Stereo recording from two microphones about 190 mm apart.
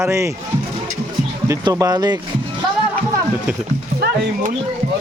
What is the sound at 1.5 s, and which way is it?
Speech, 20° right (ahead or behind).